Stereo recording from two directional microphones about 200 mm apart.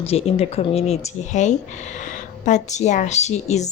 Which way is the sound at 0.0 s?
30° left (ahead or behind).